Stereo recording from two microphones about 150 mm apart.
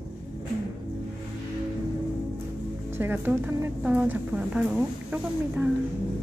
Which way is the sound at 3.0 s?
15° right (ahead or behind).